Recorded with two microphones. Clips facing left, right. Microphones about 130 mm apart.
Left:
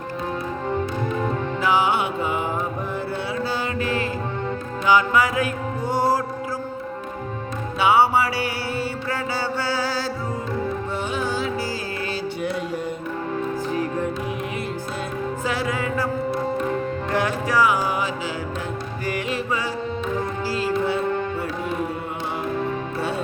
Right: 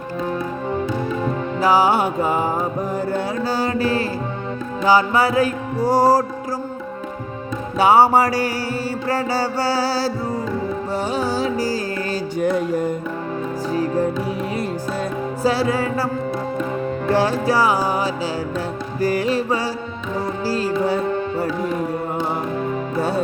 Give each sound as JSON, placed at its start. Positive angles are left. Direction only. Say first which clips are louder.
{"t": 1.6, "sound": "mantra", "louder": "right 5 dB", "side_deg": -40}
{"t": 3.1, "sound": "music", "louder": "right 4 dB", "side_deg": -40}
{"t": 7.8, "sound": "music", "louder": "right 4 dB", "side_deg": -40}
{"t": 15.4, "sound": "music", "louder": "right 8 dB", "side_deg": -35}
{"t": 17.1, "sound": "music", "louder": "right 6 dB", "side_deg": -30}
{"t": 23.0, "sound": "speech", "louder": "right 7 dB", "side_deg": -40}